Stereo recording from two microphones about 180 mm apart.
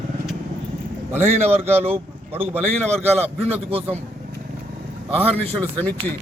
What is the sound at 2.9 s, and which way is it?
Speech, 35° right (ahead or behind).